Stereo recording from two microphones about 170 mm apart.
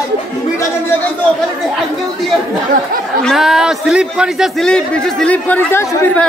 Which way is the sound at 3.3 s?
Centre (ahead or behind).